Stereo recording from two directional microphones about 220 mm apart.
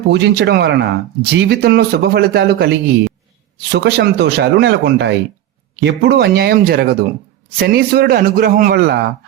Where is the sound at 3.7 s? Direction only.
50° right (ahead or behind).